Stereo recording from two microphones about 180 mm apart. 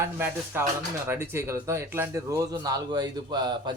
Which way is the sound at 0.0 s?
15° right (ahead or behind).